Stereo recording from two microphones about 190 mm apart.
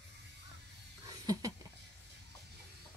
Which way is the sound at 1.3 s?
20° right (ahead or behind).